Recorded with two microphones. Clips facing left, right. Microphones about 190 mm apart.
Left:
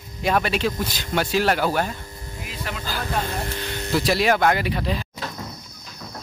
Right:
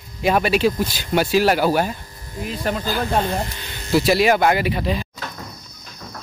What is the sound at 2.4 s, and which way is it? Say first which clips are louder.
Speech: right 9 dB; 40° right (ahead or behind).